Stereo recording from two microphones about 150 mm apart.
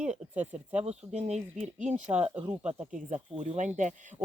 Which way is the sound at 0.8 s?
45° right (ahead or behind).